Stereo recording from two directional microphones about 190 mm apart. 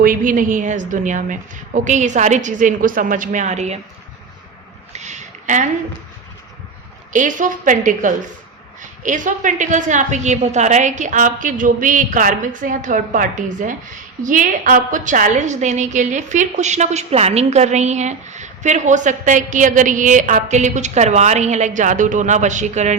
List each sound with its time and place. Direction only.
0.0 s a woman's voice: 45° right (ahead or behind)
4.9 s a sound: 35° right (ahead or behind)
7.1 s a woman's voice: 40° right (ahead or behind)